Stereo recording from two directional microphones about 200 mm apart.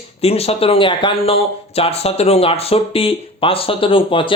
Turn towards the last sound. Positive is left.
turn(degrees=25)  # may be behind; listen again after turning